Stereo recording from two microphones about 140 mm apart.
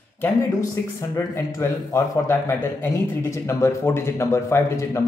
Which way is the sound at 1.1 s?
20° left (ahead or behind).